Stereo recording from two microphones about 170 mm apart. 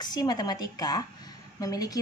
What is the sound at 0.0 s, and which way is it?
A woman's voice, 25° left (ahead or behind).